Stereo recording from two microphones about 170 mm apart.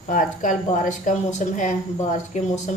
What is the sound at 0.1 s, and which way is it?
Speech, 50° left (ahead or behind).